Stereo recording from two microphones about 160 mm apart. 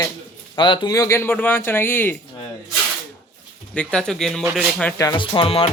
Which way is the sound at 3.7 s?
5° left (ahead or behind).